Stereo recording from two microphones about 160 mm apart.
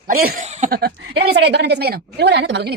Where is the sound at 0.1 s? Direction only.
65° right (ahead or behind).